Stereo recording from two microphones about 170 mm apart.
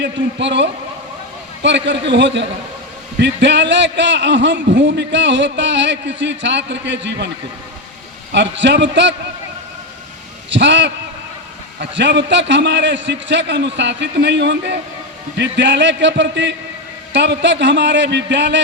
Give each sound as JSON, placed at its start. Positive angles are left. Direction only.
{"t": 0.0, "sound": "a man's voice", "side_deg": -90}
{"t": 8.3, "sound": "a man's voice", "side_deg": -90}
{"t": 10.5, "sound": "a man's voice", "side_deg": -90}